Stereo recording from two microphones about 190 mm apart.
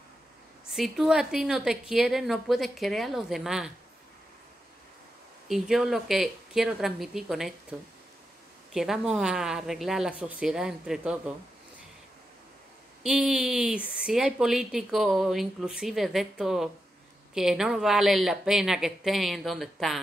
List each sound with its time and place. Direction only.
0.7 s a woman's voice: centre (ahead or behind)
5.5 s a woman's voice: centre (ahead or behind)
8.7 s a woman's voice: centre (ahead or behind)
13.0 s a woman's voice: 5° right (ahead or behind)